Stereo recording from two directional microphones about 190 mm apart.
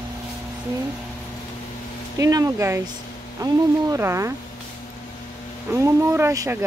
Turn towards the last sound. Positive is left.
turn(degrees=-15)  # may be behind; listen again after turning